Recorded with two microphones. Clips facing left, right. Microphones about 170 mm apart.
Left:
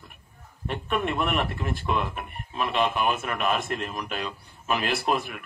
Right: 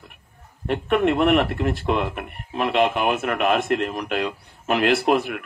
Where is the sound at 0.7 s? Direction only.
60° right (ahead or behind).